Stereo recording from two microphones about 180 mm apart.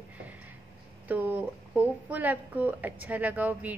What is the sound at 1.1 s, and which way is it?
A woman's voice, 10° right (ahead or behind).